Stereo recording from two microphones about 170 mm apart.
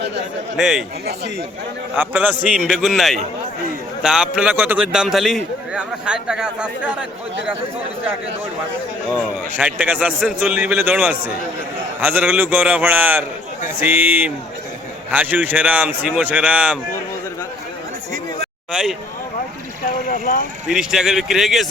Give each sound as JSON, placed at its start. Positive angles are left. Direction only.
{"t": 0.5, "sound": "a man's voice", "side_deg": -5}
{"t": 2.0, "sound": "a man's voice", "side_deg": -10}
{"t": 9.1, "sound": "a man's voice", "side_deg": -10}
{"t": 18.7, "sound": "a man's voice", "side_deg": -5}
{"t": 19.9, "sound": "speech", "side_deg": 55}
{"t": 20.7, "sound": "a man's voice", "side_deg": -5}